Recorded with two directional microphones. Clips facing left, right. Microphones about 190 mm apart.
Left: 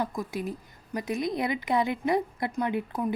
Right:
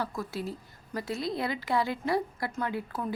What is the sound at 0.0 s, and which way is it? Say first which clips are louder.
Speech: left 3 dB; 15° left (ahead or behind).